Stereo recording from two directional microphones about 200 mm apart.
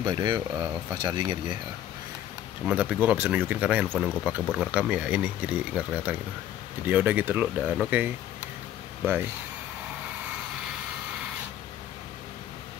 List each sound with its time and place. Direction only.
0.0 s speech: 20° right (ahead or behind)
2.6 s speech: 5° right (ahead or behind)